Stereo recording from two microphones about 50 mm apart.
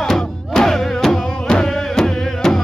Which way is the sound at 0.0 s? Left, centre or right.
Centre.